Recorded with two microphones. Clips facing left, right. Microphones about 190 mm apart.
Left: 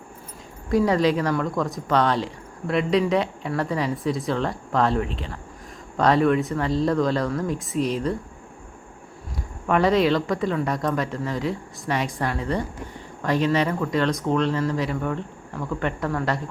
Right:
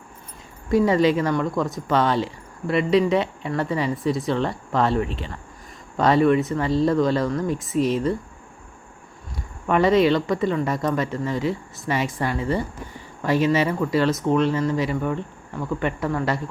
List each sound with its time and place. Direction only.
0.7 s speech: centre (ahead or behind)
9.6 s speech: centre (ahead or behind)